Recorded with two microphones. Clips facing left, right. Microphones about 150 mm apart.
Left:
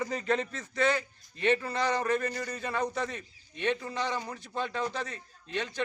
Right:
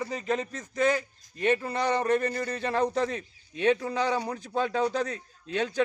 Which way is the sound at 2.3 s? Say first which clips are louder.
Right 5 dB; 55° right (ahead or behind).